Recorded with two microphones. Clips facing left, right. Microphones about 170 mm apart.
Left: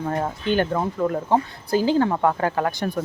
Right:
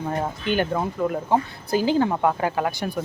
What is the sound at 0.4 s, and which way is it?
Speech, 15° right (ahead or behind).